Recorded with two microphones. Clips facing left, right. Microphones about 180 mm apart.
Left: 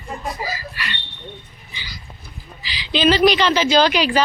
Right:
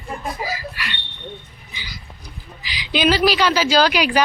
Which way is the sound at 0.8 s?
10° right (ahead or behind).